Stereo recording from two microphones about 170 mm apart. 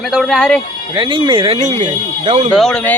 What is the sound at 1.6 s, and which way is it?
Speech, 45° right (ahead or behind).